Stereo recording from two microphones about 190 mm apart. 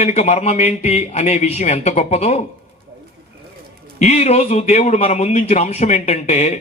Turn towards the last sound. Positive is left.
turn(degrees=35)  # may be behind; listen again after turning